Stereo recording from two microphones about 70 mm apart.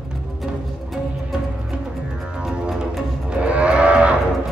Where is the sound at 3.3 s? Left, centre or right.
Centre.